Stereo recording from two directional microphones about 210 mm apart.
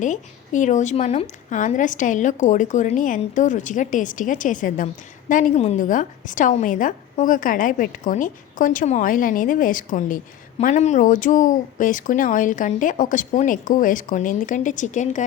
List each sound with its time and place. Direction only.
0.0 s a woman's voice: 35° left (ahead or behind)